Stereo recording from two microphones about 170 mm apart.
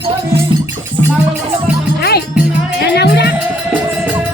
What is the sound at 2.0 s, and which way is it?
Music, 65° left (ahead or behind).